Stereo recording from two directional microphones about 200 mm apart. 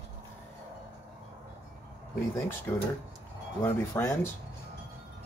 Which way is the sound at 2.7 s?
10° left (ahead or behind).